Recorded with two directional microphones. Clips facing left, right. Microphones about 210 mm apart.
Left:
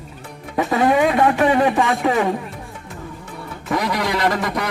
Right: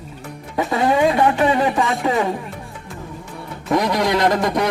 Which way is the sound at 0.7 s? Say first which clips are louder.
Even; 25° right (ahead or behind).